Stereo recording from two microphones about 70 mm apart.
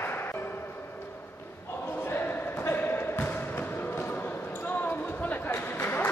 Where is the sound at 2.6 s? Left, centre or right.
Left.